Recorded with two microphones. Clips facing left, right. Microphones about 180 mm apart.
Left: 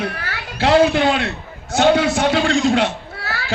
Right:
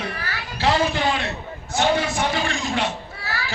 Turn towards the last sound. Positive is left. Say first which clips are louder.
# left 2 dB
turn(degrees=65)  # may be behind; listen again after turning